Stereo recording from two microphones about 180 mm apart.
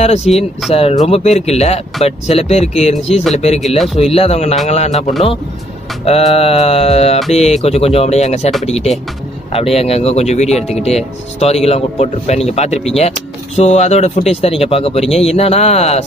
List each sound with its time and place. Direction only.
0.0 s speech: 35° left (ahead or behind)
0.3 s speech: centre (ahead or behind)
0.7 s speech: 35° left (ahead or behind)
3.6 s speech: centre (ahead or behind)
4.0 s speech: 35° left (ahead or behind)